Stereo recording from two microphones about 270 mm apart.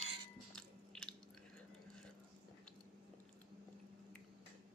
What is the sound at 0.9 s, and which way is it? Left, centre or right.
Chewing, centre.